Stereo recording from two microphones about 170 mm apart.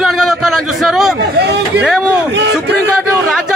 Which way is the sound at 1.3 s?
75° right (ahead or behind).